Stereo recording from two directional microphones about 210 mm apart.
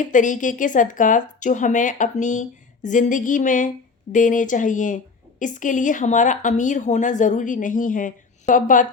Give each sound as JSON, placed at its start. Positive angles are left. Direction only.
{"t": 0.0, "sound": "a woman's voice", "side_deg": 35}